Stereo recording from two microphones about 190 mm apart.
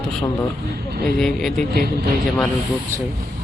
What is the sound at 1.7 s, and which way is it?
Speech, 55° right (ahead or behind).